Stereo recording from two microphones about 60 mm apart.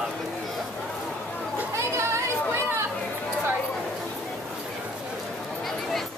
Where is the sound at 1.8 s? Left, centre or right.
Right.